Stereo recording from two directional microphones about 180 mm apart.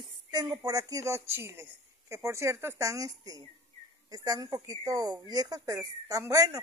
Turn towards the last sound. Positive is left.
turn(degrees=-20)  # may be behind; listen again after turning